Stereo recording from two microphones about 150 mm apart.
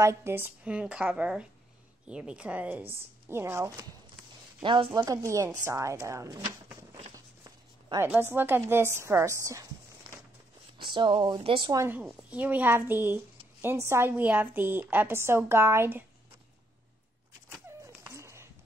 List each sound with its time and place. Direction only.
0.0 s a woman's voice: 20° right (ahead or behind)
4.6 s speech: 35° right (ahead or behind)
5.0 s a woman's voice: 20° right (ahead or behind)
8.0 s a woman's voice: 15° right (ahead or behind)
10.9 s speech: 30° right (ahead or behind)
11.7 s a woman's voice: 15° right (ahead or behind)
17.7 s a sound: 15° right (ahead or behind)